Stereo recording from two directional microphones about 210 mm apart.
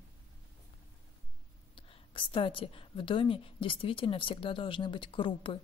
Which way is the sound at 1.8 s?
25° left (ahead or behind).